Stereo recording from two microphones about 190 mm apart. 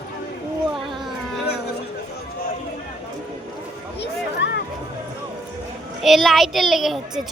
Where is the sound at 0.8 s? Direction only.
Centre (ahead or behind).